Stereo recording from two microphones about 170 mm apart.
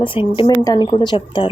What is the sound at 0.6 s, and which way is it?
Speech, 20° left (ahead or behind).